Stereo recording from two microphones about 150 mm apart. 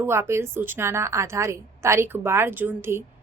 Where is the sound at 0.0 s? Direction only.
15° right (ahead or behind).